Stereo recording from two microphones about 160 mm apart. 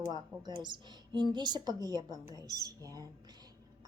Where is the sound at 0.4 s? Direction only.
30° right (ahead or behind).